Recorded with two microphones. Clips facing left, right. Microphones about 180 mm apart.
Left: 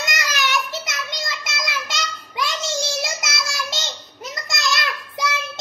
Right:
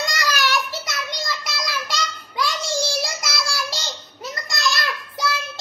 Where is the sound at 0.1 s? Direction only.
20° left (ahead or behind).